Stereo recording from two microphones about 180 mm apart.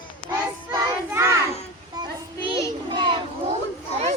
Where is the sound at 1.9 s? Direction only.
25° right (ahead or behind).